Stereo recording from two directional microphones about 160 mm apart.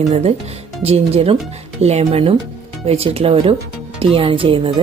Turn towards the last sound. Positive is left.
turn(degrees=-35)  # may be behind; listen again after turning